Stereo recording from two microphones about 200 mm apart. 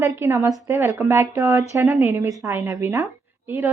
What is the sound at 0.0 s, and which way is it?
A woman's voice, 10° right (ahead or behind).